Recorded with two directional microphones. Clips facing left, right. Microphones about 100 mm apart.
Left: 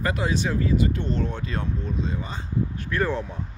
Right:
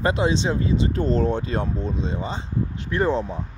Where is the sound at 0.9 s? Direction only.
35° right (ahead or behind).